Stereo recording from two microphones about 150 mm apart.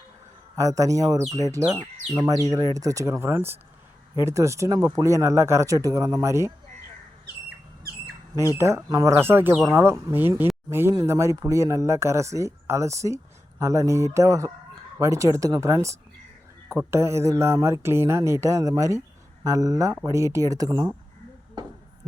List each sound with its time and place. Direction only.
0.5 s speech: 20° right (ahead or behind)
8.5 s speech: 20° right (ahead or behind)
10.7 s speech: 15° right (ahead or behind)